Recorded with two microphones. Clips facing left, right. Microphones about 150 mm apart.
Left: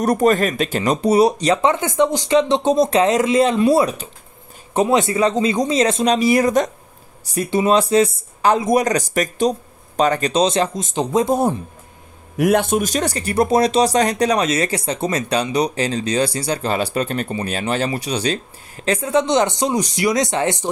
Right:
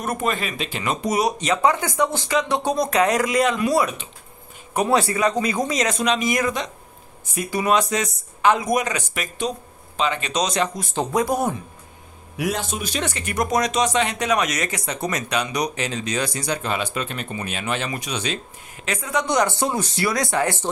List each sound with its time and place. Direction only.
0.0 s speech: 40° left (ahead or behind)
4.7 s speech: 20° left (ahead or behind); by 10.3 s 40° left (ahead or behind)
10.3 s speech: 30° left (ahead or behind)
12.4 s speech: 55° left (ahead or behind); by 20.6 s 20° left (ahead or behind)